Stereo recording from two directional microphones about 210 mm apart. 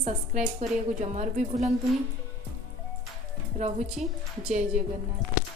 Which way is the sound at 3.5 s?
30° right (ahead or behind).